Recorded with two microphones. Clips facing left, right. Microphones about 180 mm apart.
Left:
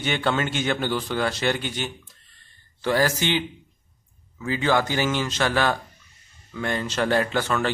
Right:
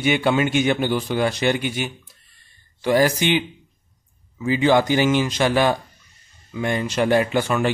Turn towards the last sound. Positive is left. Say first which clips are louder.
# right 4 dB
turn(degrees=-15)  # may be behind; listen again after turning